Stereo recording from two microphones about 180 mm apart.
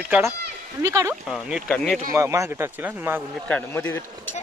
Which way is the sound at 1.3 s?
Centre (ahead or behind).